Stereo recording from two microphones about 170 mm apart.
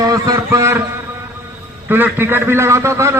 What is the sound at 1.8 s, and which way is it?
A man's voice, 10° right (ahead or behind).